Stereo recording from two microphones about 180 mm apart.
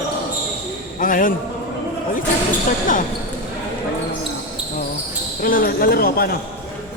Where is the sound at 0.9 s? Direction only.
50° left (ahead or behind).